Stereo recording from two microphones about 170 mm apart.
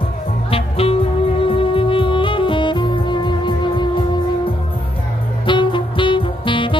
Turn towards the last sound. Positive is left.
turn(degrees=30)  # may be behind; listen again after turning